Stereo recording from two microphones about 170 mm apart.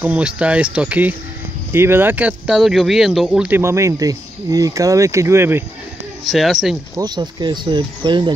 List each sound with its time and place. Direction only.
0.0 s speech: 5° right (ahead or behind)
6.2 s speech: centre (ahead or behind)
7.0 s speech: 25° right (ahead or behind)